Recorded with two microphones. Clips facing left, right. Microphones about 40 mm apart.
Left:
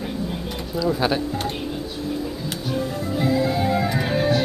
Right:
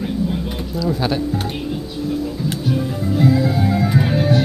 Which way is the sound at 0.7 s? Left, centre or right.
Centre.